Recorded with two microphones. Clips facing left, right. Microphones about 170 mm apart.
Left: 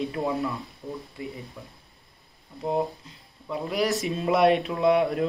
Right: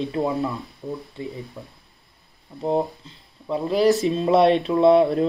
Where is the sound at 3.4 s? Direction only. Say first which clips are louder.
Right 7 dB; 30° right (ahead or behind).